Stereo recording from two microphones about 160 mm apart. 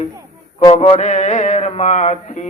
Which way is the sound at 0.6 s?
35° left (ahead or behind).